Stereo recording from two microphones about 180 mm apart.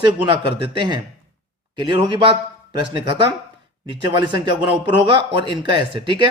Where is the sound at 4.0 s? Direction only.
25° right (ahead or behind).